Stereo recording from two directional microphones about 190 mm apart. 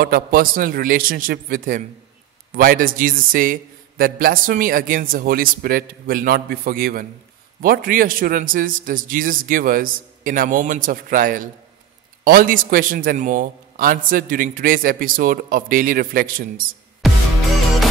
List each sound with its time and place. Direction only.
0.0 s a man's voice: 50° right (ahead or behind)
17.0 s music: centre (ahead or behind)